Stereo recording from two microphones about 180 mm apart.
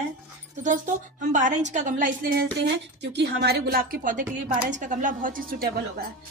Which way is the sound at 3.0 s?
70° right (ahead or behind).